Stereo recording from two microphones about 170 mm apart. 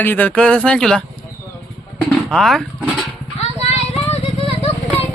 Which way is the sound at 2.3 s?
Centre (ahead or behind).